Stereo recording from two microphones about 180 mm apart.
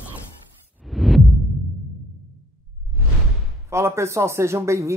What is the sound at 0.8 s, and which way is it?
Heart murmur, centre (ahead or behind).